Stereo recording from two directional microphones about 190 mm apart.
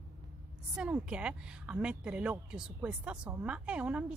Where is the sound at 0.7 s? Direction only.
5° right (ahead or behind).